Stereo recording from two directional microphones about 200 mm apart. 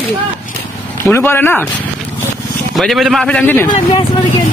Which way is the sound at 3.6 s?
20° left (ahead or behind).